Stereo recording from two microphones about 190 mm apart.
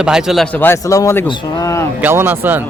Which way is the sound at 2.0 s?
10° right (ahead or behind).